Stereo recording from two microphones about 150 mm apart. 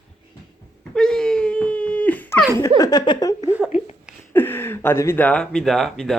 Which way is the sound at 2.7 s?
25° left (ahead or behind).